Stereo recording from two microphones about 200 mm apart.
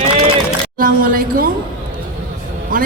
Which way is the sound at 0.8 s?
45° right (ahead or behind).